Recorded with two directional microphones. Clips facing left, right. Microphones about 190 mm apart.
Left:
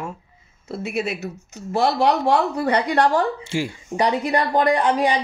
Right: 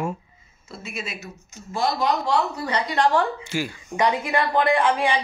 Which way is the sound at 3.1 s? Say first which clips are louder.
Left 1 dB; 35° left (ahead or behind).